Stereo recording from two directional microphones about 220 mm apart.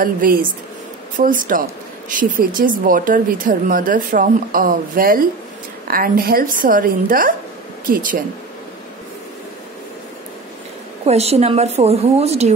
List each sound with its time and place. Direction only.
0.0 s a woman's voice: 40° right (ahead or behind)
11.1 s a woman's voice: 30° right (ahead or behind)